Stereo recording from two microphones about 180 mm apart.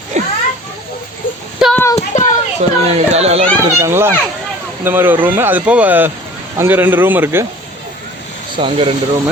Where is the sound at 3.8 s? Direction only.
15° right (ahead or behind).